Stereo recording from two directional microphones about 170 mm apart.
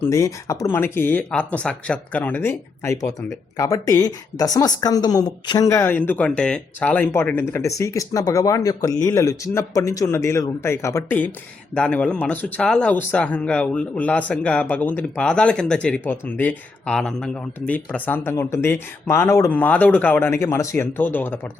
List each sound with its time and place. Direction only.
0.0 s speech: 20° left (ahead or behind)